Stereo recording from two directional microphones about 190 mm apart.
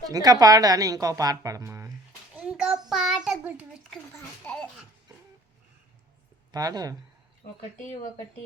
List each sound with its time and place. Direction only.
0.0 s speech: 20° right (ahead or behind)
2.3 s a sound: 5° right (ahead or behind)
2.9 s a child's voice: centre (ahead or behind)
4.1 s a child's voice: 10° left (ahead or behind)
6.5 s speech: 20° right (ahead or behind)